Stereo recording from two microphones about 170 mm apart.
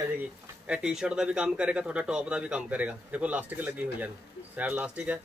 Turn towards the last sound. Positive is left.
turn(degrees=-10)  # may be behind; listen again after turning